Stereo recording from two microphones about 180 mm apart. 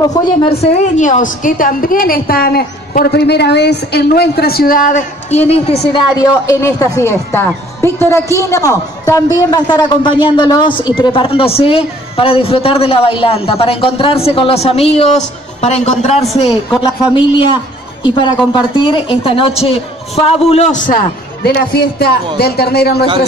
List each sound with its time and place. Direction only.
0.1 s a woman's voice: 25° left (ahead or behind); by 5.4 s 45° left (ahead or behind)
5.5 s a man's voice: 35° left (ahead or behind)
6.1 s a man's voice: 20° left (ahead or behind); by 23.0 s 60° left (ahead or behind)